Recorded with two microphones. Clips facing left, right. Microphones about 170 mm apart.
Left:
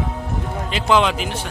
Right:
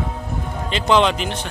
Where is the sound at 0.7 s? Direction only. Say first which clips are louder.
Right 1 dB; 5° left (ahead or behind).